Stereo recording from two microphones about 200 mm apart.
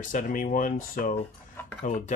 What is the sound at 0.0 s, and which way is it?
Speech, 40° left (ahead or behind).